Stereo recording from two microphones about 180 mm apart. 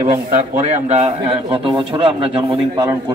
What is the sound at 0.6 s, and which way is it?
A man's voice, 40° right (ahead or behind).